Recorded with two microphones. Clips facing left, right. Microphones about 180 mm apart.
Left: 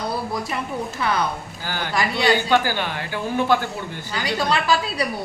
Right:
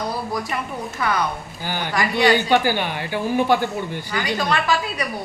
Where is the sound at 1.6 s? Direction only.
15° right (ahead or behind).